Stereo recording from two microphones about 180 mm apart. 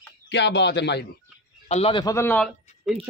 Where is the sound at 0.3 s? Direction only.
75° left (ahead or behind).